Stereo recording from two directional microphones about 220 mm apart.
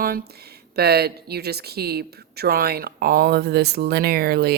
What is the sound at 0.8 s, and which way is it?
Speech, 45° right (ahead or behind).